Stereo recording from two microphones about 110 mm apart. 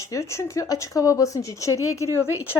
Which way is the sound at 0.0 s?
30° left (ahead or behind).